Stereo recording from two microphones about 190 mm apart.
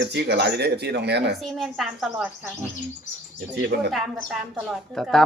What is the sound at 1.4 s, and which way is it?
Speech, centre (ahead or behind).